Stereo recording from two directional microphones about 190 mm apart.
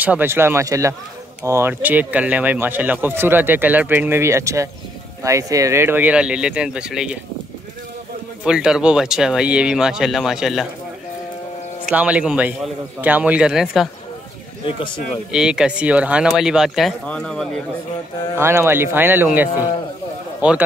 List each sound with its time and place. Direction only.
0.0 s speech: 10° right (ahead or behind)
8.5 s speech: 5° right (ahead or behind)
11.8 s speech: 5° right (ahead or behind)
14.7 s a man's voice: 25° left (ahead or behind)
15.3 s speech: 5° right (ahead or behind)
18.3 s speech: 15° right (ahead or behind)